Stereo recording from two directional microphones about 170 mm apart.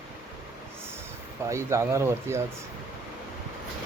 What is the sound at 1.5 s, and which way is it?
Speech, 15° right (ahead or behind).